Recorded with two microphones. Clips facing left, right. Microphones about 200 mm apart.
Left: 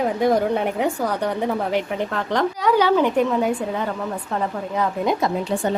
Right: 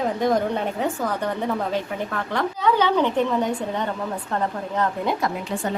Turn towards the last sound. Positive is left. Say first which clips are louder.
# left 2 dB
turn(degrees=10)  # may be behind; listen again after turning